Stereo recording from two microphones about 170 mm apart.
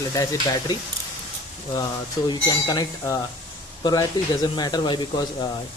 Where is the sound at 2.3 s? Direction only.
25° left (ahead or behind).